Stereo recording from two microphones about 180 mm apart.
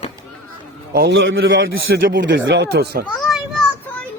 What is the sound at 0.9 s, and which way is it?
A man's voice, 70° right (ahead or behind).